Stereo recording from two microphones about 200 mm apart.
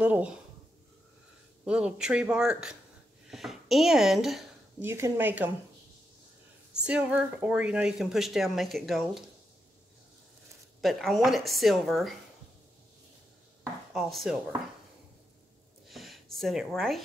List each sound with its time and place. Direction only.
0.0 s speech: 10° right (ahead or behind)
1.6 s speech: 5° right (ahead or behind)
4.8 s speech: 10° right (ahead or behind)
6.9 s speech: 5° right (ahead or behind)
10.8 s speech: centre (ahead or behind)
13.9 s speech: centre (ahead or behind)
15.9 s a sound: centre (ahead or behind)